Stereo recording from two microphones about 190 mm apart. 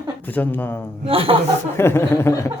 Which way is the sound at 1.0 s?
30° right (ahead or behind).